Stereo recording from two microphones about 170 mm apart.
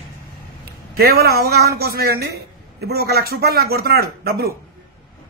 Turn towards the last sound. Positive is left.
turn(degrees=-65)  # may be behind; listen again after turning